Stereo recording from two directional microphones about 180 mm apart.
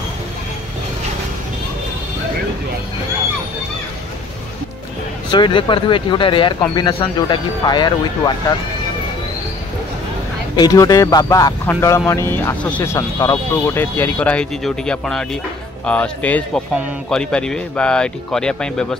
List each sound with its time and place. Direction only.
5.3 s speech: 25° left (ahead or behind)
10.5 s speech: 20° left (ahead or behind); by 18.9 s 5° left (ahead or behind)